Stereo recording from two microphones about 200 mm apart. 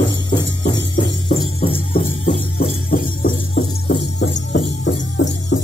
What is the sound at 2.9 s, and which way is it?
Music, 45° left (ahead or behind).